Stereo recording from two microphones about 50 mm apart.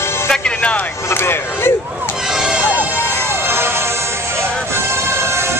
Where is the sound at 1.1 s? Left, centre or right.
Left.